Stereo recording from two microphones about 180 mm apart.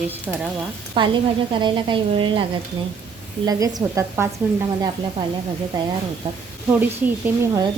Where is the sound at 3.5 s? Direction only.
20° right (ahead or behind).